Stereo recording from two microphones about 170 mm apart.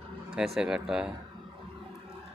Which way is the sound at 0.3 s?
5° right (ahead or behind).